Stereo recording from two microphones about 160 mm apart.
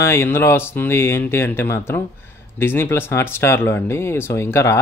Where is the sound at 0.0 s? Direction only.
15° left (ahead or behind).